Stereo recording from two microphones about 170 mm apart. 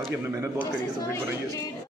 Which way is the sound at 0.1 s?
15° right (ahead or behind).